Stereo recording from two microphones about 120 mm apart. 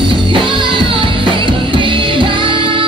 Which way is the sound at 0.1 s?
45° right (ahead or behind).